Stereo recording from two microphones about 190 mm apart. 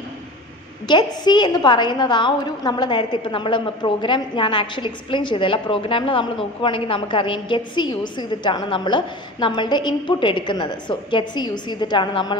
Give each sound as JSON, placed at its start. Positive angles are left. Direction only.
{"t": 0.8, "sound": "a woman's voice", "side_deg": 25}